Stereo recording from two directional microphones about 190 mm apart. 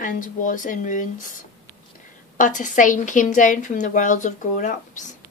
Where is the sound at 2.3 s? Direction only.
45° left (ahead or behind).